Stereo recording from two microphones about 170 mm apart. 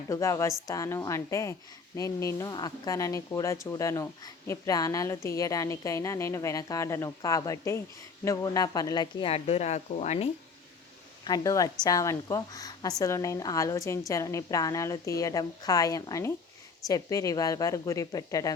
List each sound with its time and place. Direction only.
0.1 s a woman's voice: 15° left (ahead or behind)
9.3 s a woman's voice: 40° left (ahead or behind)
11.3 s a woman's voice: 20° left (ahead or behind)